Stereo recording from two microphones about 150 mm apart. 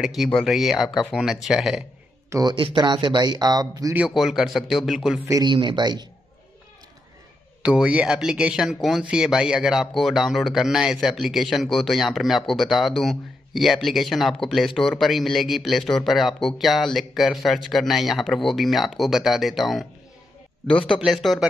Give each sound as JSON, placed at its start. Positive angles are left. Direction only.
{"t": 0.0, "sound": "speech", "side_deg": 0}
{"t": 2.2, "sound": "a sound", "side_deg": -20}
{"t": 2.5, "sound": "speech", "side_deg": -30}
{"t": 3.9, "sound": "speech", "side_deg": -5}
{"t": 5.3, "sound": "speech", "side_deg": -30}
{"t": 7.6, "sound": "a man's voice", "side_deg": -10}